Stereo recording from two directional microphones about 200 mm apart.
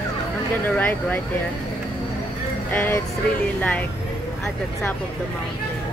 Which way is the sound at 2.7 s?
10° left (ahead or behind).